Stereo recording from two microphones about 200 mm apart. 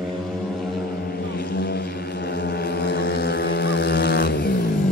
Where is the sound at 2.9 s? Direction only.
55° left (ahead or behind).